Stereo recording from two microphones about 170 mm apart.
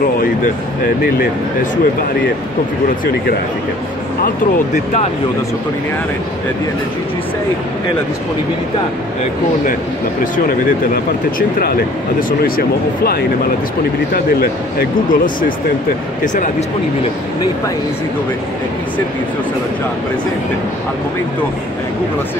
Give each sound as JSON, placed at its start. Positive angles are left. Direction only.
{"t": 11.3, "sound": "speech", "side_deg": 55}